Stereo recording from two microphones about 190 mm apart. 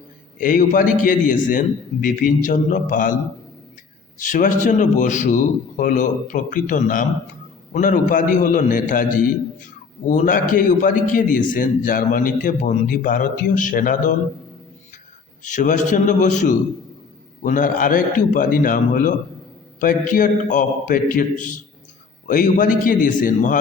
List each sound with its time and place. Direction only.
0.3 s a man's voice: 45° left (ahead or behind)
4.2 s a man's voice: 45° left (ahead or behind)
15.4 s a man's voice: 40° left (ahead or behind)